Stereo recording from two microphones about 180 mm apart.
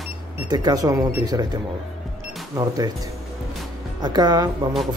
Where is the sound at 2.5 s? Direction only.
20° right (ahead or behind).